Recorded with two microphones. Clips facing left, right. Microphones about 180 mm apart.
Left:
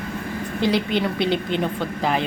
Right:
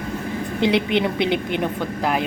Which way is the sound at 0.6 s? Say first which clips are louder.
Right 2 dB; 20° right (ahead or behind).